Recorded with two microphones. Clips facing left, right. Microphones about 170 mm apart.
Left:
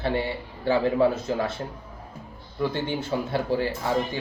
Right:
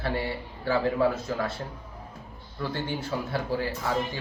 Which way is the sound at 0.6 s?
25° left (ahead or behind).